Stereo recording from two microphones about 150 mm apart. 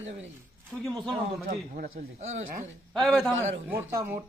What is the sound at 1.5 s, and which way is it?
Speech, 75° right (ahead or behind).